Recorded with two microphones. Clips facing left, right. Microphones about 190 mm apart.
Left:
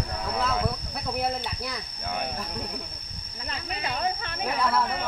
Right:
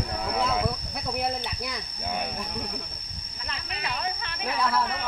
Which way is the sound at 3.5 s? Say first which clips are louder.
Left 2 dB; 40° left (ahead or behind).